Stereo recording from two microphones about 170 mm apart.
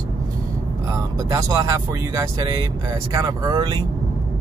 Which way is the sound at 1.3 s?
20° right (ahead or behind).